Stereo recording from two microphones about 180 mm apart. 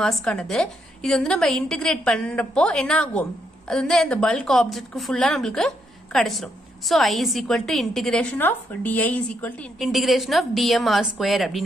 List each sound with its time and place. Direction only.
0.0 s a woman's voice: 5° left (ahead or behind)